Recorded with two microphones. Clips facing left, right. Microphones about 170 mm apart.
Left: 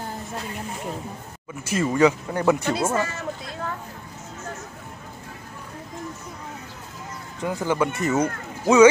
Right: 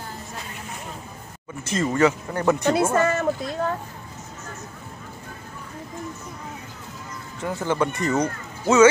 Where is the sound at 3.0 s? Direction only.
55° right (ahead or behind).